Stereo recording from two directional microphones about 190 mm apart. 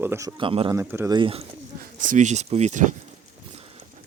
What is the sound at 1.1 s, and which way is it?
Speech, 25° right (ahead or behind).